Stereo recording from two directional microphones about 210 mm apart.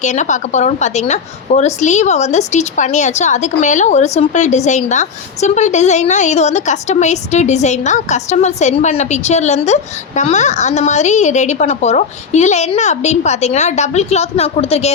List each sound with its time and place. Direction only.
0.0 s a woman's voice: 35° left (ahead or behind)